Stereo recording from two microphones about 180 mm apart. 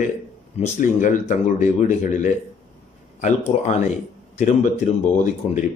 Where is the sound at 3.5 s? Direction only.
40° left (ahead or behind).